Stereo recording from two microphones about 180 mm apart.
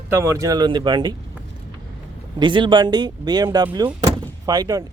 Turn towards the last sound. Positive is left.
turn(degrees=-20)  # may be behind; listen again after turning